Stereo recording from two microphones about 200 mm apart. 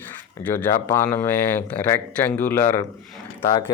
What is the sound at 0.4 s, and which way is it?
Speech, 10° left (ahead or behind).